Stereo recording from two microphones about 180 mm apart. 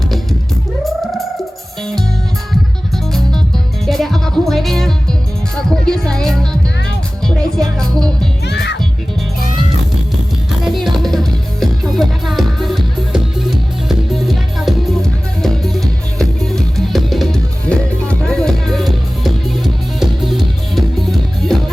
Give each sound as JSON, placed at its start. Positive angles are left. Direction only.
{"t": 0.9, "sound": "music", "side_deg": 0}
{"t": 2.5, "sound": "music", "side_deg": 0}
{"t": 8.4, "sound": "music", "side_deg": 70}
{"t": 10.6, "sound": "music", "side_deg": 0}